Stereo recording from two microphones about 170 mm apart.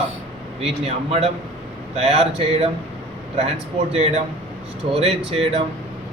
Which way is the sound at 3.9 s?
40° right (ahead or behind).